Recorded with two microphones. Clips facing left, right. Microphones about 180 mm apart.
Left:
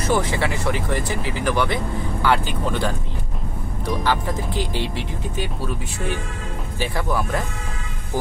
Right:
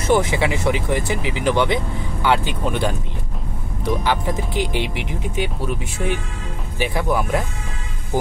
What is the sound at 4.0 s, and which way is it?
Speech, 20° right (ahead or behind).